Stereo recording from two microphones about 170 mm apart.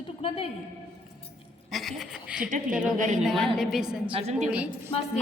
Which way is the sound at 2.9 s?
50° right (ahead or behind).